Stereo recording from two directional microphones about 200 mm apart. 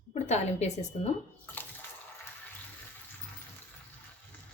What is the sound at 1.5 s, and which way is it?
Water, 10° left (ahead or behind).